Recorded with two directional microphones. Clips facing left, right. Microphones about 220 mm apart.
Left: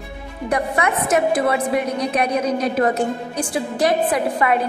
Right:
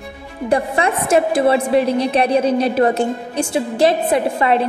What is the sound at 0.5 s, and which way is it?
A woman's voice, 30° right (ahead or behind).